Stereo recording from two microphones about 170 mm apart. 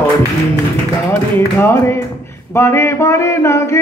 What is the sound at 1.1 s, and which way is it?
Speech, 15° left (ahead or behind).